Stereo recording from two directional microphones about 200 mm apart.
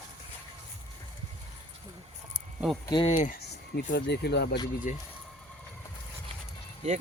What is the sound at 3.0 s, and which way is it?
Speech, 35° left (ahead or behind).